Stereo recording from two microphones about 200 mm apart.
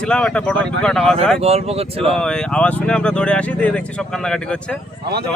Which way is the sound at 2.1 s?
5° left (ahead or behind).